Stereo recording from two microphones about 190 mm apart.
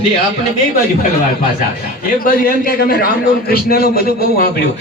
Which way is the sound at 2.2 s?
50° left (ahead or behind).